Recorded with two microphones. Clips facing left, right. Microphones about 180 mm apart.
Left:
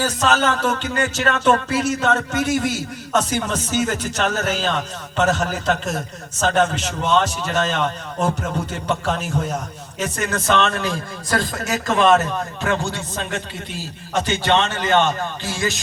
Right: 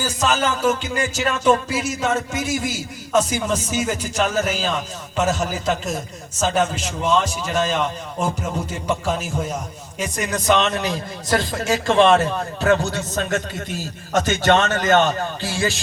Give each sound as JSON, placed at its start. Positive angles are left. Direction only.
{"t": 0.2, "sound": "a man's voice", "side_deg": -10}
{"t": 1.3, "sound": "music", "side_deg": 65}
{"t": 1.7, "sound": "a man's voice", "side_deg": -10}